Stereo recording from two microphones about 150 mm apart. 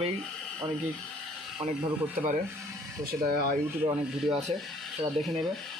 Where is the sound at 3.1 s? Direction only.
90° right.